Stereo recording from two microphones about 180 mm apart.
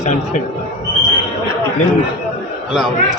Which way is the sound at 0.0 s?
45° left (ahead or behind).